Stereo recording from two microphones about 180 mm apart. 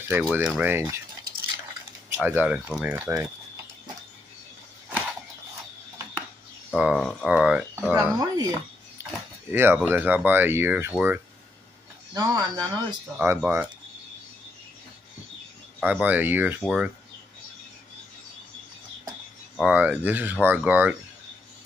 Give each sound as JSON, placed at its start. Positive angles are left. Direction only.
{"t": 0.1, "sound": "speech", "side_deg": -5}
{"t": 2.1, "sound": "speech", "side_deg": -10}
{"t": 6.8, "sound": "speech", "side_deg": -5}
{"t": 8.2, "sound": "speech", "side_deg": -20}
{"t": 12.1, "sound": "speech", "side_deg": -20}
{"t": 15.8, "sound": "speech", "side_deg": -10}
{"t": 19.7, "sound": "speech", "side_deg": -10}